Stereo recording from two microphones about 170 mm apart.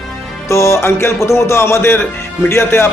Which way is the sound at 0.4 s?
15° left (ahead or behind).